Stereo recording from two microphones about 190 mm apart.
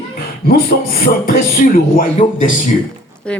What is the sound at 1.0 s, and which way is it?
Speech, 50° left (ahead or behind).